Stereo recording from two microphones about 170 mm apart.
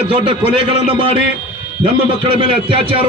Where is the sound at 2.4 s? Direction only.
30° right (ahead or behind).